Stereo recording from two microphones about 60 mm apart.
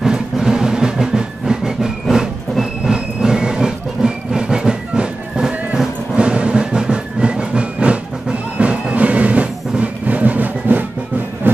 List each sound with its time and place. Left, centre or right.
0.0 s music: centre; by 11.6 s right